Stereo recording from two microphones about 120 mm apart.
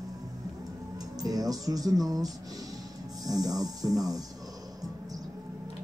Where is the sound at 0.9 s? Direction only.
30° right (ahead or behind).